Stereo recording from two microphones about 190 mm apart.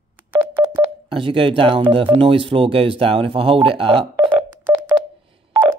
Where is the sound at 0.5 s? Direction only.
25° right (ahead or behind).